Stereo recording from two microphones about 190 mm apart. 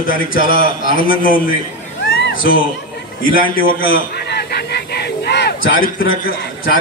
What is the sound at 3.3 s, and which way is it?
Speech, 50° left (ahead or behind).